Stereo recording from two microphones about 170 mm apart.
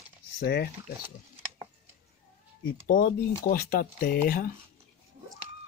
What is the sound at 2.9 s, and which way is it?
Speech, 55° left (ahead or behind).